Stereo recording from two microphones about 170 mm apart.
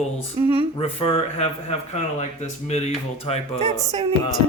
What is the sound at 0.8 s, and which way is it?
Speech, 35° left (ahead or behind).